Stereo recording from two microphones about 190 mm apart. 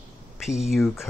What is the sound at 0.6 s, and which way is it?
Speech, centre (ahead or behind).